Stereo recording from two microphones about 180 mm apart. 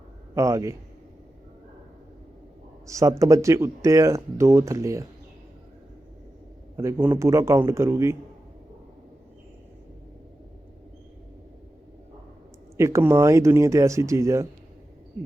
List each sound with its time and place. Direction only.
0.3 s speech: 15° right (ahead or behind)
2.8 s speech: 15° right (ahead or behind)
6.7 s speech: 15° right (ahead or behind)
12.7 s speech: 15° right (ahead or behind)